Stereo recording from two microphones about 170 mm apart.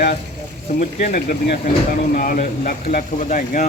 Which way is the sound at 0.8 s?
50° left (ahead or behind).